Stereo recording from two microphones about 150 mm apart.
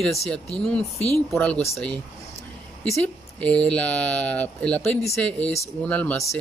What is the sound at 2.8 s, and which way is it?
Speech, 5° left (ahead or behind).